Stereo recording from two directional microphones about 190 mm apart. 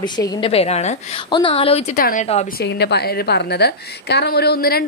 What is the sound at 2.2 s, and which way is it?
Speech, 35° left (ahead or behind).